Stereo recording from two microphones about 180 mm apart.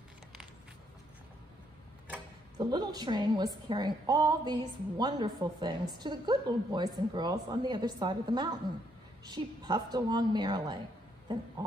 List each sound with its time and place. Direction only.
2.5 s a woman's voice: 25° right (ahead or behind)